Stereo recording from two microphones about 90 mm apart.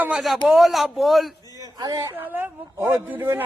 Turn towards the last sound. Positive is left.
turn(degrees=-20)  # may be behind; listen again after turning